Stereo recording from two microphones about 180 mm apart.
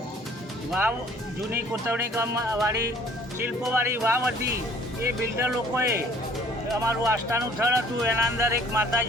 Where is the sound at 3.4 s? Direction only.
15° right (ahead or behind).